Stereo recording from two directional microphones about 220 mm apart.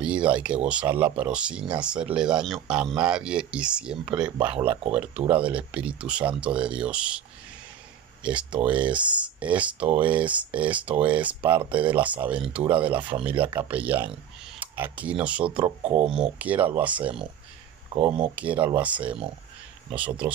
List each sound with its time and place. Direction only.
0.0 s a sound: 5° right (ahead or behind)
0.7 s speech: 5° right (ahead or behind)
15.8 s speech: 30° right (ahead or behind)
16.1 s speech: 5° right (ahead or behind)
17.9 s speech: 25° right (ahead or behind)
18.3 s speech: 5° right (ahead or behind)